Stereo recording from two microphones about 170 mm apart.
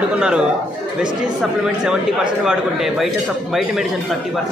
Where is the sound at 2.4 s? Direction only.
5° right (ahead or behind).